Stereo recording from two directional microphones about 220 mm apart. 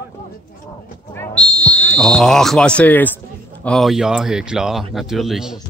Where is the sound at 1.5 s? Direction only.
5° left (ahead or behind).